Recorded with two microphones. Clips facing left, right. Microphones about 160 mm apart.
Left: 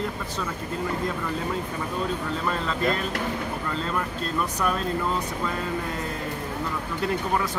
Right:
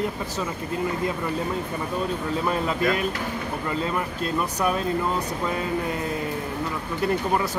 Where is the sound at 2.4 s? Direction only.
10° right (ahead or behind).